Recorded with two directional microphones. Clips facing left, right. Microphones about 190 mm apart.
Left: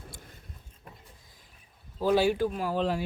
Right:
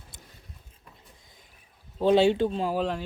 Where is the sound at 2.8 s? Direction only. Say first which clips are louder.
Even; 5° left (ahead or behind).